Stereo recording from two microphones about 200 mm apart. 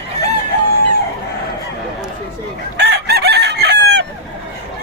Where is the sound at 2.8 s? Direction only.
55° right (ahead or behind).